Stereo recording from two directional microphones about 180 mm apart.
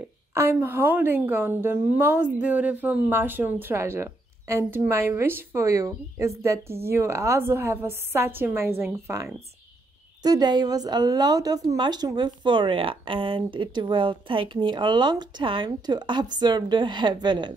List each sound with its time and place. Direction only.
0.3 s a woman's voice: 15° right (ahead or behind)